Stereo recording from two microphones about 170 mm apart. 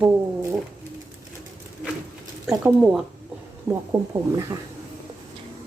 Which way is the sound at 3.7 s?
20° right (ahead or behind).